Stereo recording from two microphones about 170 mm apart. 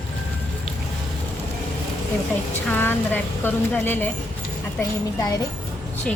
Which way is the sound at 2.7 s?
10° left (ahead or behind).